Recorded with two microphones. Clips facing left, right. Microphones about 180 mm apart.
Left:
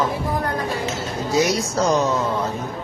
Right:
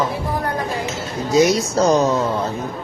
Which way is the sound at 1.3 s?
20° right (ahead or behind).